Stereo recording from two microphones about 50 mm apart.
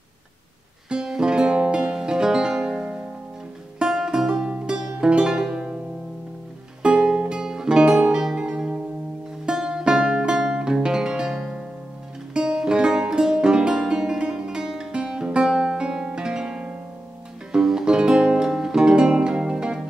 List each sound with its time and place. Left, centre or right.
0.8 s music: centre
4.3 s music: centre
6.8 s music: centre